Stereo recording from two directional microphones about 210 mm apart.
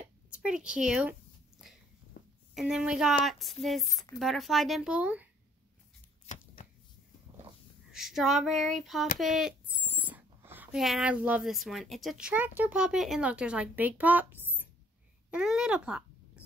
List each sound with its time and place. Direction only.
0.3 s speech: 5° right (ahead or behind)
2.1 s a sound: 50° left (ahead or behind)
2.5 s speech: 5° right (ahead or behind)
6.2 s shuffling cards: 35° left (ahead or behind)
7.9 s speech: centre (ahead or behind)